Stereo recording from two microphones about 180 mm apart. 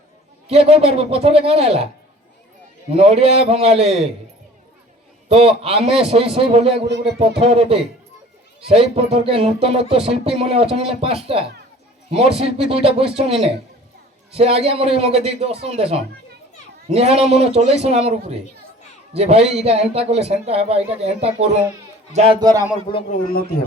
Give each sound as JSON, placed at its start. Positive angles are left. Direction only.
{"t": 0.4, "sound": "speech", "side_deg": -35}
{"t": 2.9, "sound": "speech", "side_deg": -35}
{"t": 5.3, "sound": "speech", "side_deg": -35}
{"t": 6.8, "sound": "a sound", "side_deg": -70}
{"t": 7.2, "sound": "speech", "side_deg": -35}
{"t": 22.4, "sound": "a man's voice", "side_deg": -20}
{"t": 23.3, "sound": "speech", "side_deg": 55}